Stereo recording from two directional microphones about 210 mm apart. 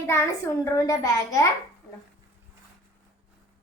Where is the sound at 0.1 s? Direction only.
10° left (ahead or behind).